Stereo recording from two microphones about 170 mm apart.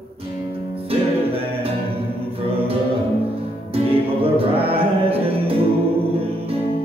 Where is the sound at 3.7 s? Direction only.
35° right (ahead or behind).